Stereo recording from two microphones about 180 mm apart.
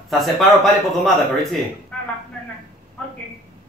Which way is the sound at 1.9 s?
5° left (ahead or behind).